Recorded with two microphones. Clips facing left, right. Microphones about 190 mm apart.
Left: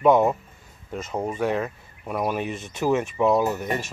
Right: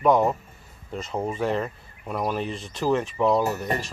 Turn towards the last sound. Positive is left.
turn(degrees=20)  # may be behind; listen again after turning